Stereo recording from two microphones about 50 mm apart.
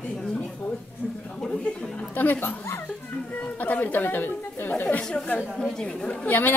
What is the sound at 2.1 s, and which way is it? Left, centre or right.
Speech, left.